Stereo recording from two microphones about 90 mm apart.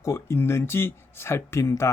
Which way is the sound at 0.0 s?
30° left (ahead or behind).